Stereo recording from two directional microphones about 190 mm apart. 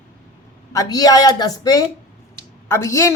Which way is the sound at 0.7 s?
20° left (ahead or behind).